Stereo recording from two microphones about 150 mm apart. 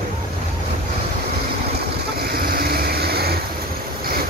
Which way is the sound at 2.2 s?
85° right.